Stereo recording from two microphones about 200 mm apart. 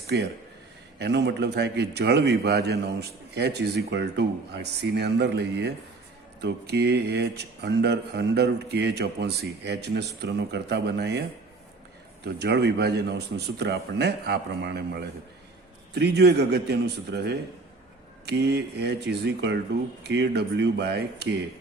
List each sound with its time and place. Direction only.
0.1 s speech: 60° right (ahead or behind)